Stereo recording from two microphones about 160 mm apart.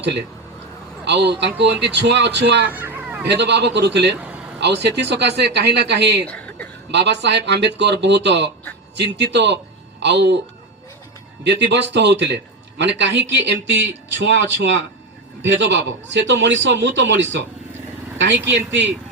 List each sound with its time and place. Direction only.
0.0 s a man's voice: 90° right
2.6 s hubbub: 10° right (ahead or behind)
3.2 s speech: 90° right
6.2 s a sound: 10° left (ahead or behind)
6.9 s speech: 90° right
11.4 s speech: 90° right
15.7 s speech: 90° right
18.5 s speech: 90° right